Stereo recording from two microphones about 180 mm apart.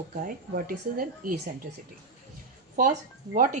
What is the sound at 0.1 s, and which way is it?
Speech, 50° right (ahead or behind).